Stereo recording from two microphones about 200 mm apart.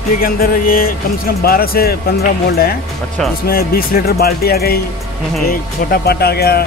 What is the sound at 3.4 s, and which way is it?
Speech, 50° left (ahead or behind).